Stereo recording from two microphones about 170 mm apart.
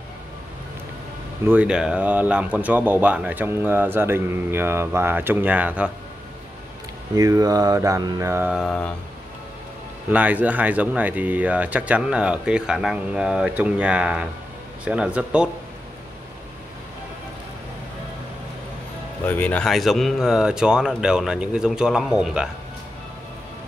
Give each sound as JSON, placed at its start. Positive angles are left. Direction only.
{"t": 1.4, "sound": "speech", "side_deg": -10}
{"t": 7.2, "sound": "mantra", "side_deg": -20}
{"t": 8.5, "sound": "speech", "side_deg": 0}
{"t": 10.1, "sound": "speech", "side_deg": -10}
{"t": 19.2, "sound": "speech", "side_deg": 10}